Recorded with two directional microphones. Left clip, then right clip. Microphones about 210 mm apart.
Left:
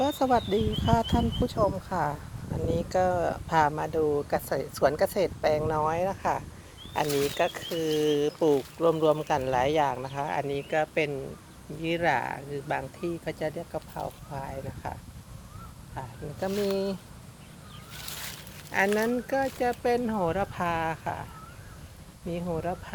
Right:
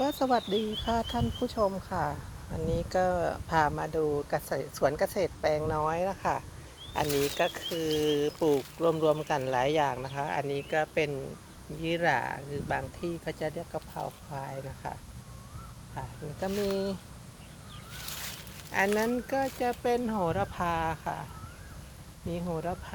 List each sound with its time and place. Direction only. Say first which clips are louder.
0.0 s speech: left 3 dB; 5° left (ahead or behind)
16.0 s speech: left 2 dB; centre (ahead or behind)
16.5 s speech: left 3 dB; 25° left (ahead or behind)
16.7 s speech: left 2 dB; 10° left (ahead or behind)
17.9 s speech: left 1 dB; 20° left (ahead or behind)
22.3 s speech: left 2 dB; 10° left (ahead or behind)